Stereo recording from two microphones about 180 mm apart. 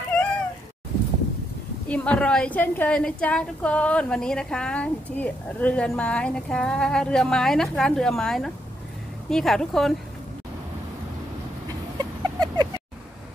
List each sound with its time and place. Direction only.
1.9 s a woman's voice: 5° left (ahead or behind)
12.0 s chicken: 25° right (ahead or behind)